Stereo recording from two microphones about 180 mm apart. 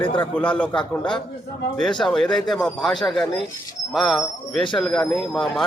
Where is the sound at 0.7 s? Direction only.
25° left (ahead or behind).